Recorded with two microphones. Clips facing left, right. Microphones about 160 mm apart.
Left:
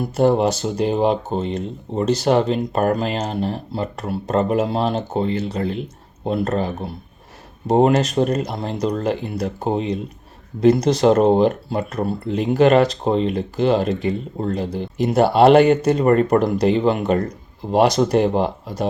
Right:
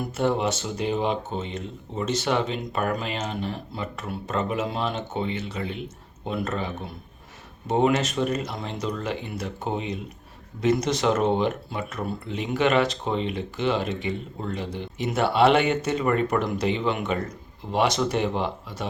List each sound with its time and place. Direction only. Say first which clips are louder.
0.2 s speech: left 8 dB; 35° left (ahead or behind)